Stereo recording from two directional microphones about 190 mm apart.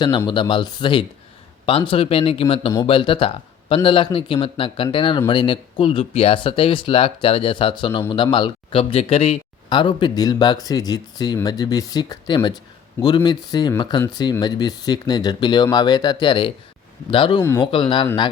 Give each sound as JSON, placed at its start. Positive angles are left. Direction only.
{"t": 0.3, "sound": "speech", "side_deg": 25}
{"t": 17.4, "sound": "speech", "side_deg": 15}
{"t": 17.7, "sound": "speech", "side_deg": 25}